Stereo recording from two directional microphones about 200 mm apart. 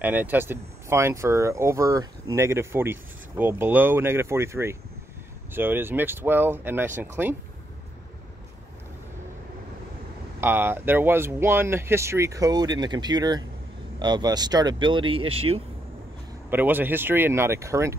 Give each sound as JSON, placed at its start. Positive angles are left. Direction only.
{"t": 0.0, "sound": "speech", "side_deg": -10}
{"t": 10.4, "sound": "speech", "side_deg": -10}
{"t": 16.4, "sound": "speech", "side_deg": -10}